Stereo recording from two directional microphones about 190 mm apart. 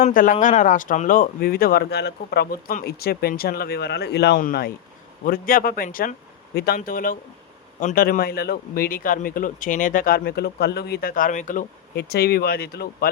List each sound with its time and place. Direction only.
0.0 s speech: 45° left (ahead or behind)
11.9 s speech: 55° left (ahead or behind)